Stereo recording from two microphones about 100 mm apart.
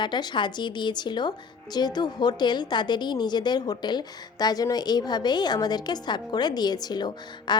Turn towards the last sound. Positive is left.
turn(degrees=45)  # may be behind; listen again after turning